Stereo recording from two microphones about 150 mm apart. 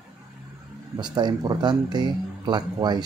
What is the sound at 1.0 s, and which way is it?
Speech, 30° right (ahead or behind).